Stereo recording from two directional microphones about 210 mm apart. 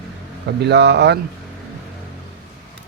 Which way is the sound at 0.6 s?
55° right (ahead or behind).